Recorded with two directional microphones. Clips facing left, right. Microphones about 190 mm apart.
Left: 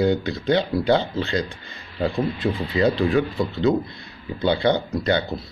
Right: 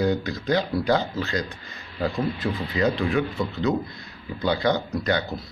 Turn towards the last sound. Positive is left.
turn(degrees=30)  # may be behind; listen again after turning